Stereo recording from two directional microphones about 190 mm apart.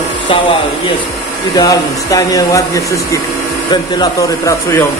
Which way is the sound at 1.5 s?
20° left (ahead or behind).